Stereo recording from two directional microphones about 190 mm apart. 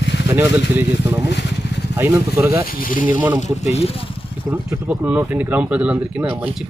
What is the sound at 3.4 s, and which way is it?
Speech, 35° left (ahead or behind).